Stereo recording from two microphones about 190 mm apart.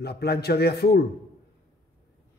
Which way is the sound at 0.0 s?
60° left (ahead or behind).